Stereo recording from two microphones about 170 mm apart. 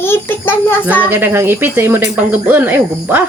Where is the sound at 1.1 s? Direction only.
15° right (ahead or behind).